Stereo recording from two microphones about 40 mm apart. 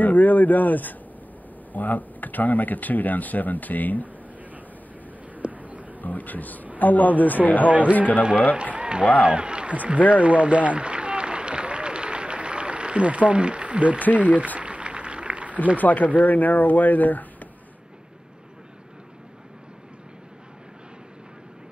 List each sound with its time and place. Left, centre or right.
0.0 s speech: left
5.5 s a sound: right
5.9 s speech: left
7.6 s speech: right
9.8 s a sound: right
15.8 s speech: left